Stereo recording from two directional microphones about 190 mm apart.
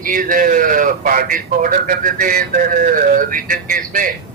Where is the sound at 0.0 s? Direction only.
45° right (ahead or behind).